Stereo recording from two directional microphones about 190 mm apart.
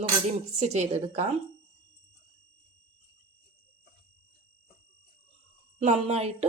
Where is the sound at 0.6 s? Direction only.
35° right (ahead or behind).